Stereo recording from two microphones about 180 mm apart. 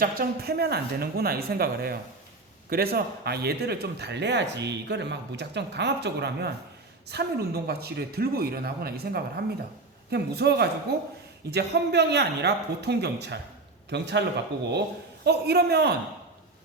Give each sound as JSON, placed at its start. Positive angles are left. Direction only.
{"t": 0.0, "sound": "a man's voice", "side_deg": -55}